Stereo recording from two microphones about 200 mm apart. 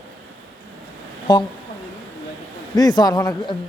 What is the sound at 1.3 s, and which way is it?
Speech, 20° left (ahead or behind).